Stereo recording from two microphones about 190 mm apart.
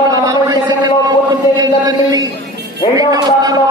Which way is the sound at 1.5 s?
20° right (ahead or behind).